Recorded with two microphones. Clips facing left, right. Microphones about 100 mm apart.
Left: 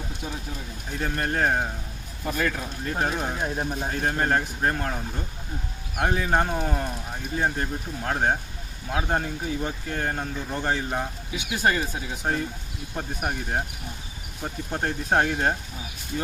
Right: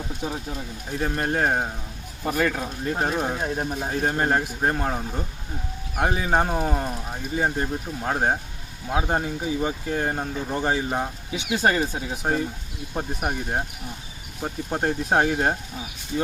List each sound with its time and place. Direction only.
0.2 s speech: 25° right (ahead or behind)
0.9 s speech: 5° right (ahead or behind)
2.2 s speech: 30° right (ahead or behind)
2.8 s speech: 5° right (ahead or behind)
6.0 s speech: 10° right (ahead or behind)
11.3 s speech: 25° right (ahead or behind)
13.0 s speech: 15° right (ahead or behind)